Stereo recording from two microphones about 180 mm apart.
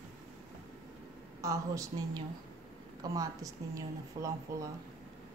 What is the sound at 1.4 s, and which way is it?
Speech, 20° right (ahead or behind).